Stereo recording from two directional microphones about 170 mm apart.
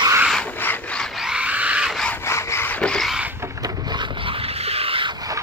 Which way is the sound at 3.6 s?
25° right (ahead or behind).